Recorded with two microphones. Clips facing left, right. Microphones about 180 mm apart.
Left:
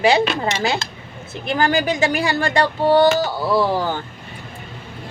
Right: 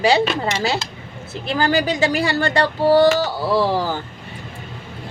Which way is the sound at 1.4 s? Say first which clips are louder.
Even; 35° right (ahead or behind).